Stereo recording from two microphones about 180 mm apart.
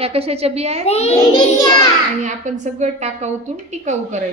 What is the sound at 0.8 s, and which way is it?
Speech, 35° left (ahead or behind).